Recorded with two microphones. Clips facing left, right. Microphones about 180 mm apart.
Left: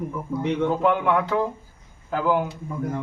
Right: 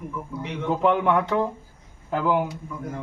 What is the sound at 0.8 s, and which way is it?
A man's voice, 20° right (ahead or behind).